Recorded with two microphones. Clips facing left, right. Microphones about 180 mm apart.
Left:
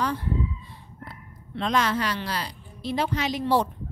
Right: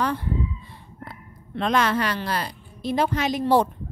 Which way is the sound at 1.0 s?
55° right (ahead or behind).